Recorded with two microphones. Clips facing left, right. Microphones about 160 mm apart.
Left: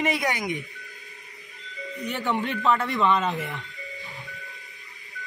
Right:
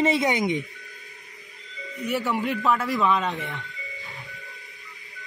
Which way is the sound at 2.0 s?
5° right (ahead or behind).